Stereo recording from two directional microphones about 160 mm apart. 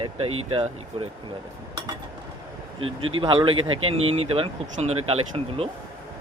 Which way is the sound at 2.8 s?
35° right (ahead or behind).